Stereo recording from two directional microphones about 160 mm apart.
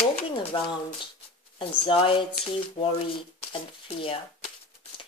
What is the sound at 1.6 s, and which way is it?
Speech, 35° left (ahead or behind).